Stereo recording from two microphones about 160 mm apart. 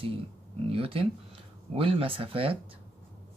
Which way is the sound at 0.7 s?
35° right (ahead or behind).